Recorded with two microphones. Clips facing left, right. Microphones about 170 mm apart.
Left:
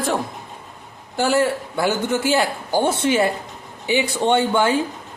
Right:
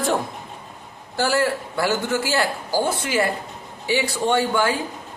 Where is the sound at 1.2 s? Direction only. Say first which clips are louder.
Left 2 dB; 20° left (ahead or behind).